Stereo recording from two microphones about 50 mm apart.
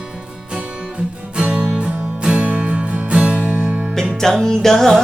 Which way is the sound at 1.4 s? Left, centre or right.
Right.